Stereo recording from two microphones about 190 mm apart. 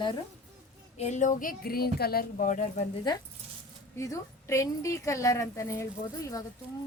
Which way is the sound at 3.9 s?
15° left (ahead or behind).